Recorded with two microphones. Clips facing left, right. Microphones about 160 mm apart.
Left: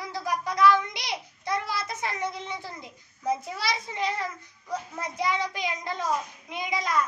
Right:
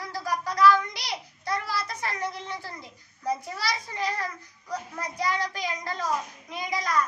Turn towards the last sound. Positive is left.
turn(degrees=20)  # may be behind; listen again after turning